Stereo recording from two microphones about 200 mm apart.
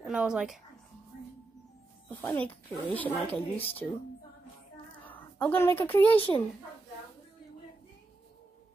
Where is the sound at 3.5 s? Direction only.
30° left (ahead or behind).